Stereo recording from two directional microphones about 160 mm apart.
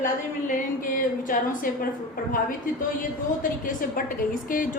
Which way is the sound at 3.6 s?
55° left (ahead or behind).